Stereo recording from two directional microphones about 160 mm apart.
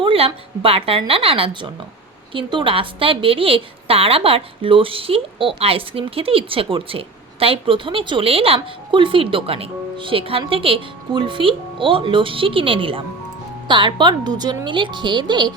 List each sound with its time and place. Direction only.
0.0 s a woman's voice: 35° right (ahead or behind)